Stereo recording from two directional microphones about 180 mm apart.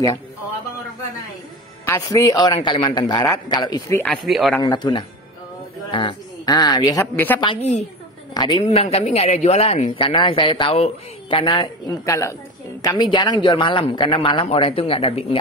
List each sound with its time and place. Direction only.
1.9 s speech: 20° left (ahead or behind)
4.0 s speech: 5° left (ahead or behind)
4.6 s speech: 25° left (ahead or behind)
8.4 s speech: 25° left (ahead or behind)
8.6 s speech: 35° left (ahead or behind)